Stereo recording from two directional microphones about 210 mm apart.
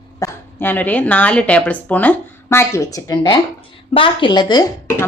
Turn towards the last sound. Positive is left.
turn(degrees=15)  # may be behind; listen again after turning